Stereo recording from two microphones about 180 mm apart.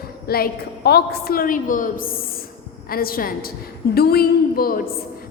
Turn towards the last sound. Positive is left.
turn(degrees=55)  # may be behind; listen again after turning